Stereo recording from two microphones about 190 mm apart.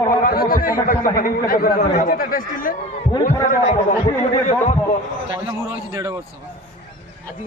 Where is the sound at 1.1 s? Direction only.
50° left (ahead or behind).